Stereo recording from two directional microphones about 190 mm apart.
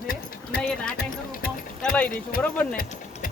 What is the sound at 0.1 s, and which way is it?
Clip-clop, 50° left (ahead or behind).